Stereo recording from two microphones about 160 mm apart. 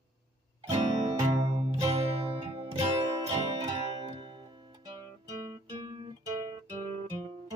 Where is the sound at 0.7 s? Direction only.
45° right (ahead or behind).